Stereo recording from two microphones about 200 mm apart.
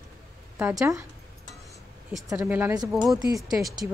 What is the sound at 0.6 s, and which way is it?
Speech, 15° right (ahead or behind).